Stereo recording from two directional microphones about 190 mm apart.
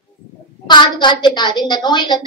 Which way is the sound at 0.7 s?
25° left (ahead or behind).